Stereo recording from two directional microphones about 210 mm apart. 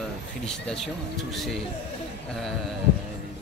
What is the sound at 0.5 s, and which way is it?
Speech, 5° left (ahead or behind).